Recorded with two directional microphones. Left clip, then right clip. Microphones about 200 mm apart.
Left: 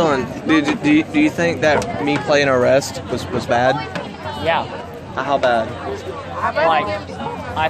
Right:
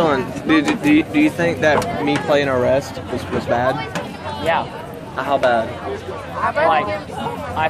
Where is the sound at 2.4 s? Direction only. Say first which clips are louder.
Left 3 dB; 25° left (ahead or behind).